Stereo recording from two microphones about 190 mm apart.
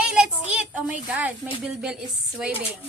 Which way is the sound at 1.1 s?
10° right (ahead or behind).